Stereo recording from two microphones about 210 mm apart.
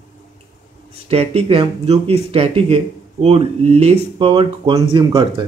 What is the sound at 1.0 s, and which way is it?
Speech, 30° right (ahead or behind).